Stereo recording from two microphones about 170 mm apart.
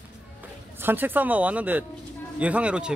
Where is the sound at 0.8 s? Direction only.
10° right (ahead or behind).